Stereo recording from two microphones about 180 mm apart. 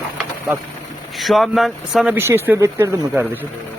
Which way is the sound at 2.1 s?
10° right (ahead or behind).